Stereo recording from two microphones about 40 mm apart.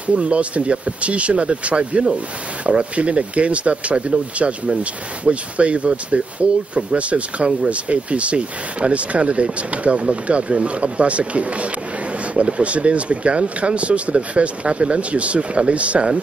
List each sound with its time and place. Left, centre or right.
0.0 s speech: right